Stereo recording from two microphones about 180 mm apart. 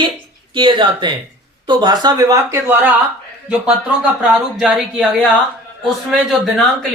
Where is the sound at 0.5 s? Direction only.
25° right (ahead or behind).